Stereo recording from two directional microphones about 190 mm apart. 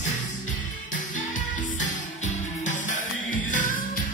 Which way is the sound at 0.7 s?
40° left (ahead or behind).